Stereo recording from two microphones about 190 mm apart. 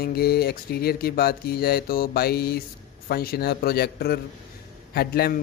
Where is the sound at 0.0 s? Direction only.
55° left (ahead or behind).